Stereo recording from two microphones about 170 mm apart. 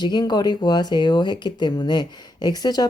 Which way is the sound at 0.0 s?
25° left (ahead or behind).